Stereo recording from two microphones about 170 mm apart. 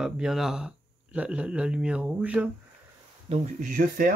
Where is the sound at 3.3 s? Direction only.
50° right (ahead or behind).